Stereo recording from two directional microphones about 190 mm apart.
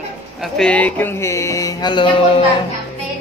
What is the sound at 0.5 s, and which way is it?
Music, 5° left (ahead or behind).